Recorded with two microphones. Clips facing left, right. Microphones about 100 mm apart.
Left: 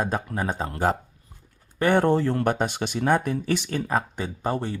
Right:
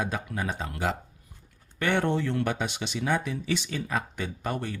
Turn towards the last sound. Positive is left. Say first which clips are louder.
# left 5 dB
turn(degrees=30)  # may be behind; listen again after turning